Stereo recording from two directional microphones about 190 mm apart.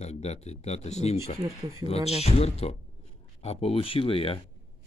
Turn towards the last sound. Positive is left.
turn(degrees=30)  # may be behind; listen again after turning